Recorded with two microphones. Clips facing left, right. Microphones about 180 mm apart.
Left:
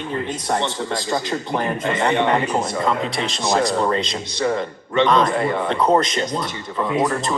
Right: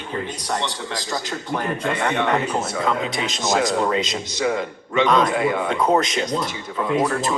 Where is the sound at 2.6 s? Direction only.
Centre (ahead or behind).